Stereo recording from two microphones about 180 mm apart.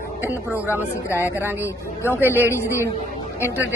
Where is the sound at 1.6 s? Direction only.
15° left (ahead or behind).